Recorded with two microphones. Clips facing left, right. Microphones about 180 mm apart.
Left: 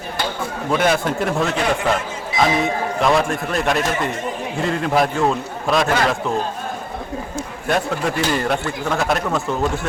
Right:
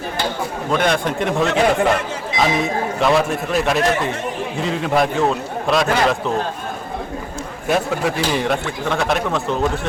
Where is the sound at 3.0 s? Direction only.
Centre (ahead or behind).